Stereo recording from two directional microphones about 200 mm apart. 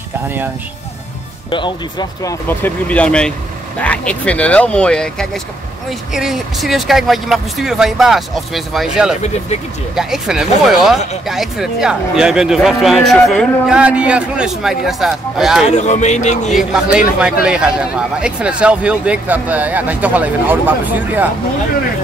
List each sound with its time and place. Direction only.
1.5 s speech: 25° left (ahead or behind)
2.4 s speech: 10° left (ahead or behind)
15.7 s a man's voice: 35° left (ahead or behind)
16.5 s speech: 5° right (ahead or behind)